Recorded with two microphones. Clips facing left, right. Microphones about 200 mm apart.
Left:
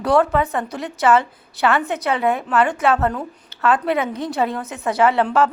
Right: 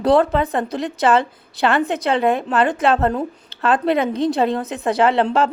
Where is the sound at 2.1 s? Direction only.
30° right (ahead or behind).